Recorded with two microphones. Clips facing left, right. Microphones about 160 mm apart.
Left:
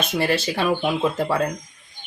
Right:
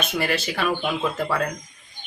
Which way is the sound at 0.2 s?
30° left (ahead or behind).